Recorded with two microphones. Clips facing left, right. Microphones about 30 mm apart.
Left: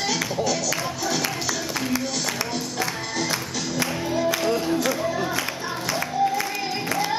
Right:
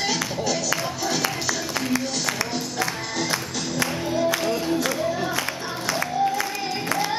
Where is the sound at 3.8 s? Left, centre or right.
Centre.